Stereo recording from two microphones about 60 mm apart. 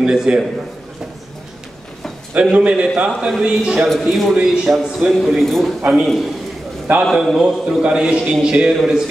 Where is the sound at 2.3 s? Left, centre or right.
Centre.